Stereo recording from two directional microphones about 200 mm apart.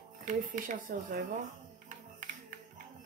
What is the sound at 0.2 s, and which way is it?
Speech, 40° right (ahead or behind).